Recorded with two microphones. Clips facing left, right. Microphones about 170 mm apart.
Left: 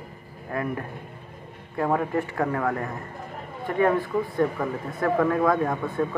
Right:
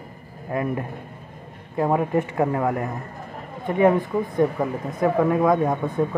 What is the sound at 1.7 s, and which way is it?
Speech, 20° right (ahead or behind).